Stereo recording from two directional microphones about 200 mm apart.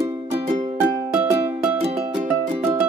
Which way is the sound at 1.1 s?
5° right (ahead or behind).